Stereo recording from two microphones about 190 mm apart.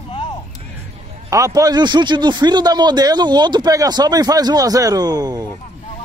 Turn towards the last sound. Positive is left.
turn(degrees=-20)  # may be behind; listen again after turning